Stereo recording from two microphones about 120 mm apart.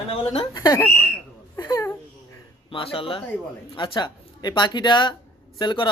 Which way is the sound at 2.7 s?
45° left (ahead or behind).